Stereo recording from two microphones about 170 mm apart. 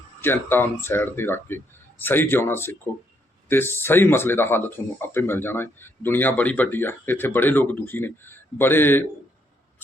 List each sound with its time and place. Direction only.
0.2 s speech: 15° left (ahead or behind)